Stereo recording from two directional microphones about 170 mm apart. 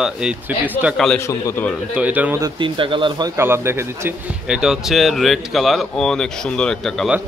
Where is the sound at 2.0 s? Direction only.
10° right (ahead or behind).